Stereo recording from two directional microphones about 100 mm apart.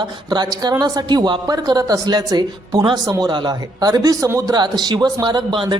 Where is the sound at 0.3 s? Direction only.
45° right (ahead or behind).